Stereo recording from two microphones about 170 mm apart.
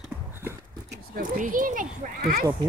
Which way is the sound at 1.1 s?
55° right (ahead or behind).